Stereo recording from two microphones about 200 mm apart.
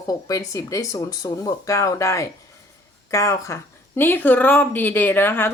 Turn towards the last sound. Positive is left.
turn(degrees=10)  # may be behind; listen again after turning